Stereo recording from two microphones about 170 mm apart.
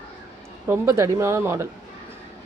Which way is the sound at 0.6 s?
15° right (ahead or behind).